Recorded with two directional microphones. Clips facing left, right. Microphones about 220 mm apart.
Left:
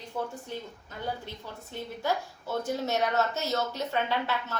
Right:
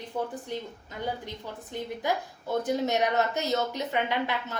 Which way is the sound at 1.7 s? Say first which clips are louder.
Right 1 dB; 15° right (ahead or behind).